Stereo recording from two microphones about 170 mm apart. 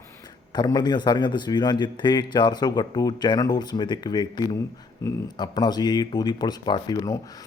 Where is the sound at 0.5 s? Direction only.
25° left (ahead or behind).